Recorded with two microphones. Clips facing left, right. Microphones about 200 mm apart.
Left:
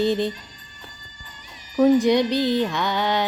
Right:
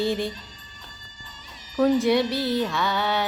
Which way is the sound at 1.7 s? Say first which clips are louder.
Left 3 dB; 15° left (ahead or behind).